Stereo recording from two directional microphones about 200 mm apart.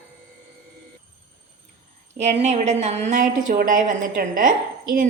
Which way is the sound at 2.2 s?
35° right (ahead or behind).